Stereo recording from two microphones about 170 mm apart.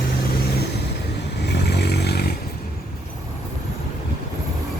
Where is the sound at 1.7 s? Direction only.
80° left.